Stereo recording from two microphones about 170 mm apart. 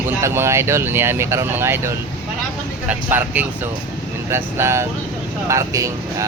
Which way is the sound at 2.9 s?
10° right (ahead or behind).